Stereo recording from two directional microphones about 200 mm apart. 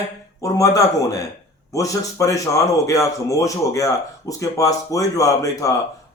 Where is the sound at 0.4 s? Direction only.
15° left (ahead or behind).